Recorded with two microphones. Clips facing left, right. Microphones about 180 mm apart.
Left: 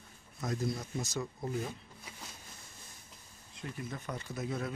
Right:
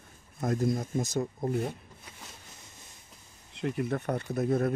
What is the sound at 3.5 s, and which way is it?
Speech, 65° right (ahead or behind).